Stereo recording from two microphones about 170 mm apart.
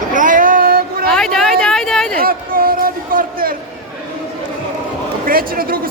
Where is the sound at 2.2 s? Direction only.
60° right (ahead or behind).